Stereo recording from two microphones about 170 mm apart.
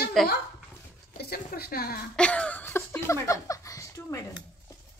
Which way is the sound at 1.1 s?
65° left (ahead or behind).